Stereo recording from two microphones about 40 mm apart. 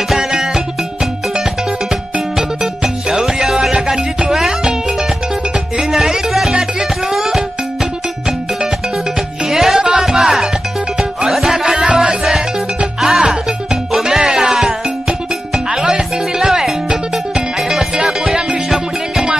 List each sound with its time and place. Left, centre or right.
0.2 s music: centre
5.8 s music: centre
9.5 s music: centre
9.8 s music: right
10.0 s music: centre